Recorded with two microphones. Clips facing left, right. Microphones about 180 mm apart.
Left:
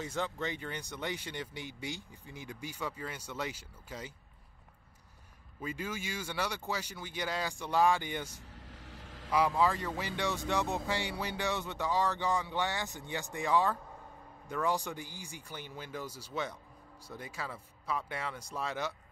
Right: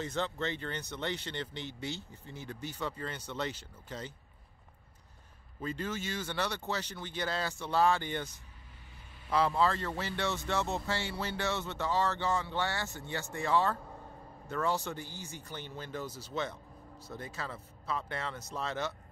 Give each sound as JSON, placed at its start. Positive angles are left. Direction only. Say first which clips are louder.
{"t": 0.0, "sound": "speech", "louder": "right 1 dB", "side_deg": 10}
{"t": 5.6, "sound": "speech", "louder": "right 2 dB", "side_deg": 10}
{"t": 8.9, "sound": "vehicle", "louder": "left 7 dB", "side_deg": 90}
{"t": 9.3, "sound": "speech", "louder": "even", "side_deg": 15}